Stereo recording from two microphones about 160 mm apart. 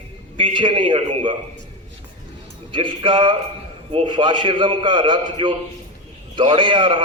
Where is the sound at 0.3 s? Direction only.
30° right (ahead or behind).